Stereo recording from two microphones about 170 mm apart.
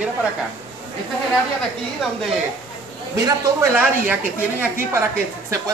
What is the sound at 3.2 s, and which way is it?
Speech, 15° right (ahead or behind).